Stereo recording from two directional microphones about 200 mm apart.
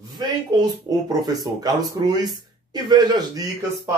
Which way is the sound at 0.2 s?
20° right (ahead or behind).